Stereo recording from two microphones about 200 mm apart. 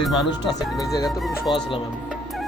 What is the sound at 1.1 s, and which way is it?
Music, centre (ahead or behind).